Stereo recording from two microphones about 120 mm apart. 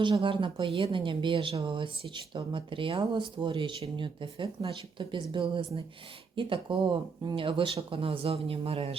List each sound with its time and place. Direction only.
0.0 s speech: 45° right (ahead or behind)